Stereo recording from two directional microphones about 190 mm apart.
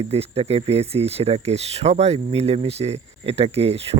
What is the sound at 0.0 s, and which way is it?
Speech, 30° right (ahead or behind).